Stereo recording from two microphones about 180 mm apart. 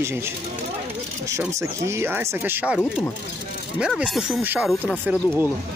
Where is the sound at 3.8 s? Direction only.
Centre (ahead or behind).